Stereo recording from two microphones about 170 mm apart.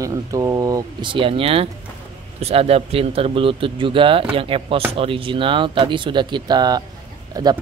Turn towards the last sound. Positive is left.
turn(degrees=-20)  # may be behind; listen again after turning